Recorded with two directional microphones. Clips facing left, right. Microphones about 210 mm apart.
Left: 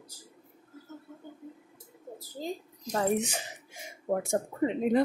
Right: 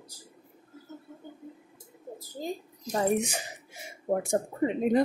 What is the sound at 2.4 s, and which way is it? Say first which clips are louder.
Speech: right 1 dB; 15° right (ahead or behind).